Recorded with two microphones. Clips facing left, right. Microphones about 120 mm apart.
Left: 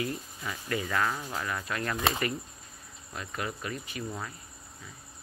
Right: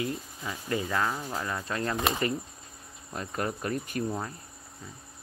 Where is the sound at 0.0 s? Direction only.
25° right (ahead or behind).